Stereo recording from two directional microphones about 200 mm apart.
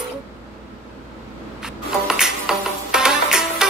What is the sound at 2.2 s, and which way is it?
Music, 5° right (ahead or behind).